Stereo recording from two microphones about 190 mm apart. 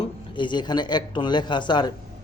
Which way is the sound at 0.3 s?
25° left (ahead or behind).